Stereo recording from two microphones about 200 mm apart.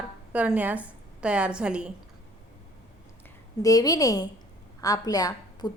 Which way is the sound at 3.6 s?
15° left (ahead or behind).